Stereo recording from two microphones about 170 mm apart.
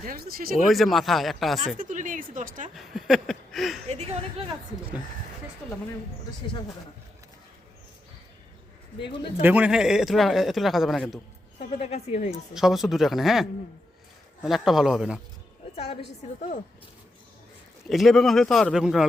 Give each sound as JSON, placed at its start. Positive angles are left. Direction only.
{"t": 0.0, "sound": "speech", "side_deg": -60}
{"t": 0.7, "sound": "a man's voice", "side_deg": 0}
{"t": 1.8, "sound": "speech", "side_deg": -50}
{"t": 2.7, "sound": "a sound", "side_deg": 0}
{"t": 3.8, "sound": "a woman's voice", "side_deg": -40}
{"t": 9.4, "sound": "a man's voice", "side_deg": -10}
{"t": 11.8, "sound": "a woman's voice", "side_deg": 40}
{"t": 12.5, "sound": "a man's voice", "side_deg": 0}
{"t": 15.7, "sound": "a woman's voice", "side_deg": 35}
{"t": 17.8, "sound": "a man's voice", "side_deg": 0}